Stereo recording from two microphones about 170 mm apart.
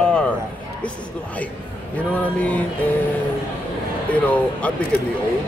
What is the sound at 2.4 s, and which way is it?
Speech, 10° left (ahead or behind).